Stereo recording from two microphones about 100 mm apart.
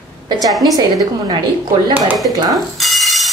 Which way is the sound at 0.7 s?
40° right (ahead or behind).